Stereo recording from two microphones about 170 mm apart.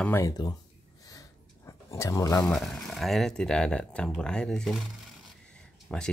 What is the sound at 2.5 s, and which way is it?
Speech, centre (ahead or behind).